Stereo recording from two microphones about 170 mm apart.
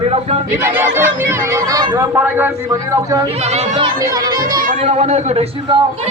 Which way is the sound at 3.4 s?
40° right (ahead or behind).